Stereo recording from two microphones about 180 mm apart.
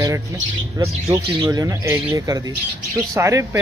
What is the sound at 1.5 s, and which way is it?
Speech, 15° right (ahead or behind).